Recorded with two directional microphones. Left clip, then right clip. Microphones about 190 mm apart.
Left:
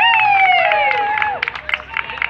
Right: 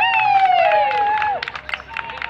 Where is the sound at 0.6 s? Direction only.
30° right (ahead or behind).